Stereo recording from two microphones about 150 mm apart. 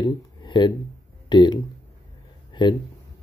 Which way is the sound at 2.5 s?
30° left (ahead or behind).